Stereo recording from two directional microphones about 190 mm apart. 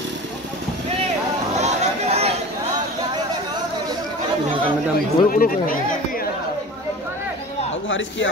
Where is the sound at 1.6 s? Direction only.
35° right (ahead or behind).